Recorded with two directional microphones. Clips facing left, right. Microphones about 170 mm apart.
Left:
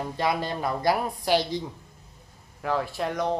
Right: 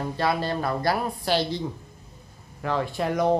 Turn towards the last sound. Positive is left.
turn(degrees=-5)  # may be behind; listen again after turning